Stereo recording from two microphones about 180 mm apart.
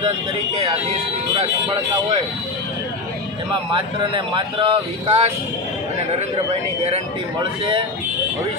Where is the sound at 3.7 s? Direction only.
25° right (ahead or behind).